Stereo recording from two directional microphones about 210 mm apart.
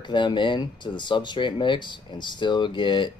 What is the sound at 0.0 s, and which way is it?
Speech, 20° left (ahead or behind).